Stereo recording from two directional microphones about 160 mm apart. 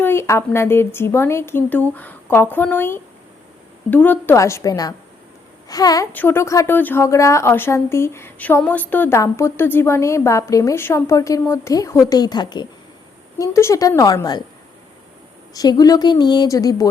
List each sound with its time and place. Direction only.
0.0 s a woman's voice: 15° left (ahead or behind)
15.5 s a woman's voice: 25° left (ahead or behind)